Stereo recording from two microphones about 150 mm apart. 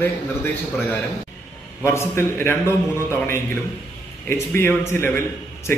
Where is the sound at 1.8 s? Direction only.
20° left (ahead or behind).